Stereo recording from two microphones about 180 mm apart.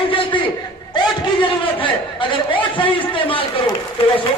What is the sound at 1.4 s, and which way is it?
A man's voice, 30° left (ahead or behind).